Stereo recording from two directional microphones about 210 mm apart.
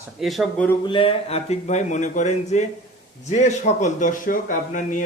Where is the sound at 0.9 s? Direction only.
25° left (ahead or behind).